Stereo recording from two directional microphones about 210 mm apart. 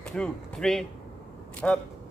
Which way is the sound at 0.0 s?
5° left (ahead or behind).